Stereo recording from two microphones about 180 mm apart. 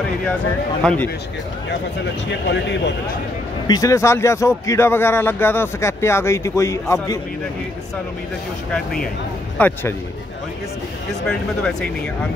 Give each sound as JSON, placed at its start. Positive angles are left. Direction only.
{"t": 2.4, "sound": "speech", "side_deg": 75}
{"t": 3.6, "sound": "speech", "side_deg": 20}
{"t": 8.7, "sound": "speech", "side_deg": 5}
{"t": 11.2, "sound": "speech", "side_deg": 5}